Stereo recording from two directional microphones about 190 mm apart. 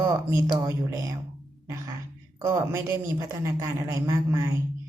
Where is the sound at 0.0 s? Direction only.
15° right (ahead or behind).